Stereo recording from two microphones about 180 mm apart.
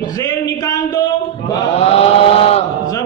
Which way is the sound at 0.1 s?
20° left (ahead or behind).